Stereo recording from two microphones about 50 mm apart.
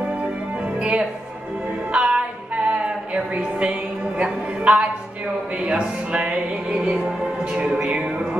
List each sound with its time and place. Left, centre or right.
0.7 s music: right
1.9 s singing: right
3.3 s music: right